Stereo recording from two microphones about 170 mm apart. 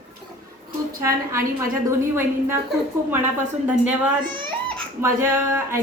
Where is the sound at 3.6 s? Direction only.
10° right (ahead or behind).